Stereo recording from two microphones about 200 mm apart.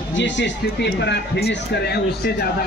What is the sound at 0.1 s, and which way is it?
Speech, 65° left (ahead or behind).